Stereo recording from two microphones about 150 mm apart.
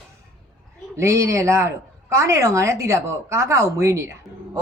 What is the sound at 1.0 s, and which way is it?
Speech, 20° right (ahead or behind).